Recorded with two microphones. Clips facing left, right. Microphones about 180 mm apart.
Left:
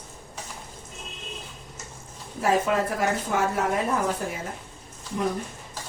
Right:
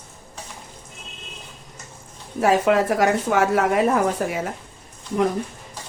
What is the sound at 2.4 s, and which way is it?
A woman's voice, 80° right.